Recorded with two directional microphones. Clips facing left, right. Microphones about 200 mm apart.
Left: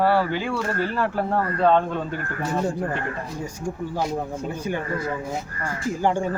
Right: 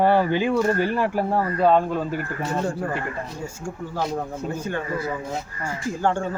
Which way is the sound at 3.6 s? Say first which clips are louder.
Left 2 dB; 15° left (ahead or behind).